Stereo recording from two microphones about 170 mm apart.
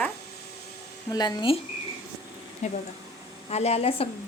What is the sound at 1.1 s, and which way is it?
Speech, 25° left (ahead or behind).